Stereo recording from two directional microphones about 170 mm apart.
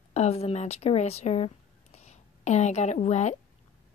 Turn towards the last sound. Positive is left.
turn(degrees=40)  # may be behind; listen again after turning